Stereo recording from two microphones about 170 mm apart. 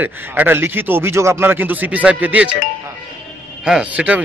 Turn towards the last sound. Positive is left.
turn(degrees=-10)  # may be behind; listen again after turning